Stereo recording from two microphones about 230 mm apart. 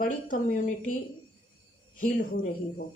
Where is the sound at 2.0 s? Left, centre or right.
Left.